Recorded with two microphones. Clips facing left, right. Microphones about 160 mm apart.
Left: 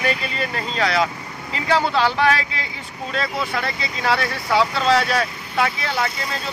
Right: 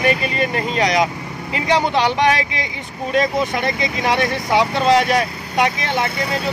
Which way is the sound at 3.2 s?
15° right (ahead or behind).